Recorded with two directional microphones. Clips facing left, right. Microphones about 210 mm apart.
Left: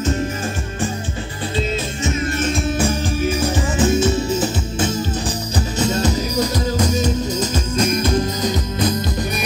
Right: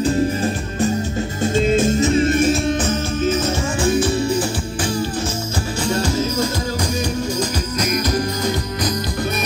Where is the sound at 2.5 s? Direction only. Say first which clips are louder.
Right 1 dB; 5° left (ahead or behind).